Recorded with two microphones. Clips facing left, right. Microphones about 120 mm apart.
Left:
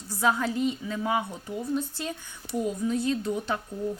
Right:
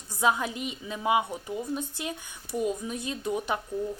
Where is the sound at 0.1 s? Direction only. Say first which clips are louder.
Left 1 dB; 15° right (ahead or behind).